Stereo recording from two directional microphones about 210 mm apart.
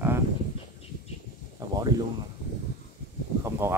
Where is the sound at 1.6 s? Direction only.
20° right (ahead or behind).